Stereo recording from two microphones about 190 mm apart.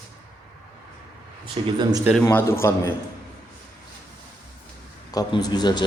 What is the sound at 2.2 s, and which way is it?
Speech, 15° left (ahead or behind).